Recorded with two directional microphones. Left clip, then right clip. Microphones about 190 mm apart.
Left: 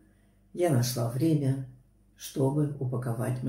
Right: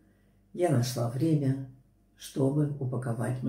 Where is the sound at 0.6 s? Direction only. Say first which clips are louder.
Left 1 dB; centre (ahead or behind).